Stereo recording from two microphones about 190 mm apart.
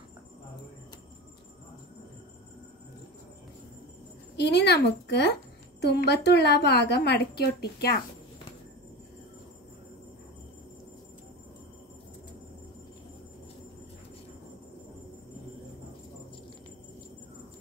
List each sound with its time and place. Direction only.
4.4 s a woman's voice: 60° left (ahead or behind)